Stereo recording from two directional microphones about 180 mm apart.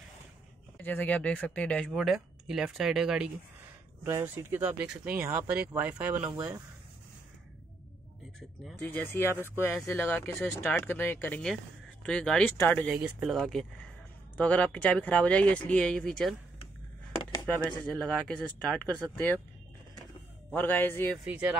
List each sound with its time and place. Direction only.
0.7 s speech: 10° left (ahead or behind)
4.0 s speech: 15° right (ahead or behind)
8.4 s speech: 5° left (ahead or behind)
12.9 s speech: 5° right (ahead or behind)
17.2 s a sound: 20° left (ahead or behind)
17.6 s speech: 5° left (ahead or behind)
20.5 s speech: 10° left (ahead or behind)
21.3 s speech: 5° right (ahead or behind)